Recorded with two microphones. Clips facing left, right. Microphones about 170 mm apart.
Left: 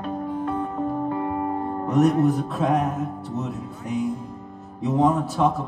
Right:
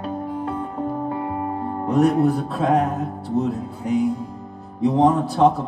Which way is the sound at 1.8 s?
30° right (ahead or behind).